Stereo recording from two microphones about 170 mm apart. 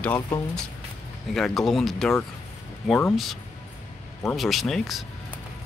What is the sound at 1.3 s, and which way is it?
Speech, centre (ahead or behind).